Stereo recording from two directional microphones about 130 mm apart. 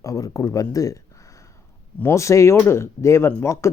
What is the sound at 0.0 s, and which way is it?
Speech, 25° left (ahead or behind).